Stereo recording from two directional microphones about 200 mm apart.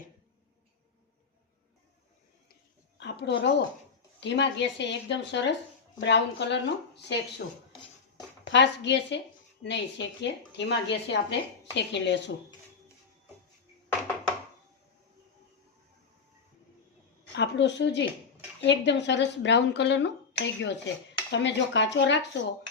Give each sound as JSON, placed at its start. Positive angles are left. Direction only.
{"t": 3.0, "sound": "a sound", "side_deg": 60}
{"t": 4.2, "sound": "a woman's voice", "side_deg": 60}
{"t": 8.4, "sound": "a woman's voice", "side_deg": 60}
{"t": 17.3, "sound": "a woman's voice", "side_deg": 60}